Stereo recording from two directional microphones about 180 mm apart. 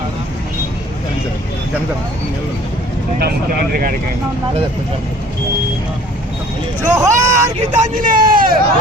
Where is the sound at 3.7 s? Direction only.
50° right (ahead or behind).